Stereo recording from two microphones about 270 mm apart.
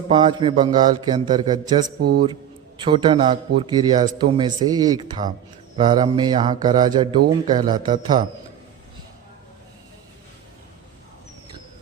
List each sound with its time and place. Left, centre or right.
0.1 s a man's voice: centre
2.0 s a man's voice: right
2.2 s a man's voice: centre